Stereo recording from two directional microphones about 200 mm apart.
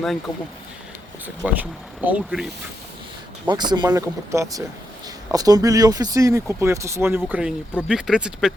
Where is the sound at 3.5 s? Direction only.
20° right (ahead or behind).